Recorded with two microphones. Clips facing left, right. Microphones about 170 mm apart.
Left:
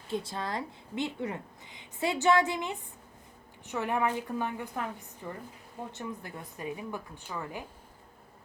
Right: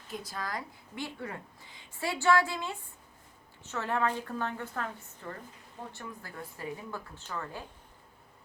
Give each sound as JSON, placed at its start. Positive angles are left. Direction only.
{"t": 0.1, "sound": "a woman's voice", "side_deg": 25}